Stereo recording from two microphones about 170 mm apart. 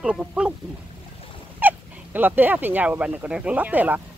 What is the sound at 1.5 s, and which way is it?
Speech, 10° right (ahead or behind).